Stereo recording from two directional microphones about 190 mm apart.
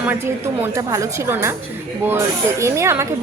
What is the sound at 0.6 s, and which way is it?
Speech, 15° right (ahead or behind).